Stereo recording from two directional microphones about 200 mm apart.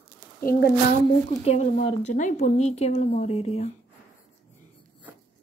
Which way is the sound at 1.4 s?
30° left (ahead or behind).